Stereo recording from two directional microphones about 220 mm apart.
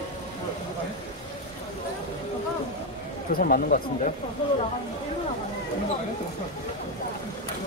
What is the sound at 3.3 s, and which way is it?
Speech, 40° left (ahead or behind).